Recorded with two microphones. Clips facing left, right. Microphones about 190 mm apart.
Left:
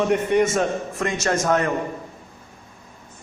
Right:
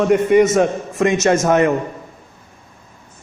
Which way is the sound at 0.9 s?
20° right (ahead or behind).